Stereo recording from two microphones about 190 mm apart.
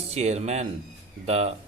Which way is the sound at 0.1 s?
35° right (ahead or behind).